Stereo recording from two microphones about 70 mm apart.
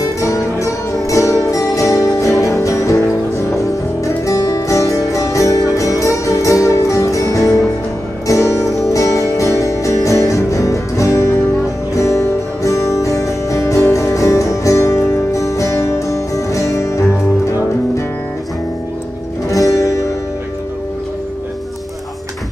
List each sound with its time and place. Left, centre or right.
0.0 s music: left
19.5 s music: left